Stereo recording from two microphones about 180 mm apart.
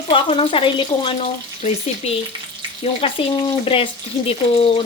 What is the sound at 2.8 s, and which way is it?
Speech, 30° left (ahead or behind).